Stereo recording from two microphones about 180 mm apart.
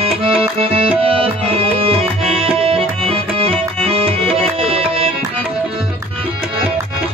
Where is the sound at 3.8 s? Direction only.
30° right (ahead or behind).